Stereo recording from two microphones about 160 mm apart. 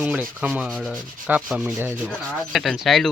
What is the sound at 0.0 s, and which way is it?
Speech, 5° right (ahead or behind).